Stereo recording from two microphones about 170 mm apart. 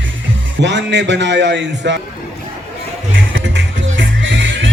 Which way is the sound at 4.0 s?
90° right.